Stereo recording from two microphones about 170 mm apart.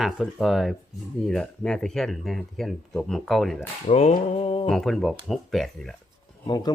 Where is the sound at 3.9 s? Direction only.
40° left (ahead or behind).